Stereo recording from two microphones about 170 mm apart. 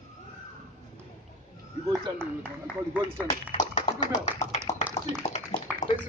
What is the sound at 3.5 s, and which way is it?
Clapping, 45° left (ahead or behind).